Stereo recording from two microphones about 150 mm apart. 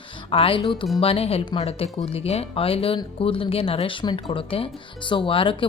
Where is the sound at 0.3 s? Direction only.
35° left (ahead or behind).